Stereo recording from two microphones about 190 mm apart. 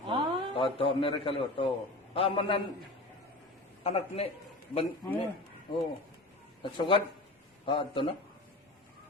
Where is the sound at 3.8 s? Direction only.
30° left (ahead or behind).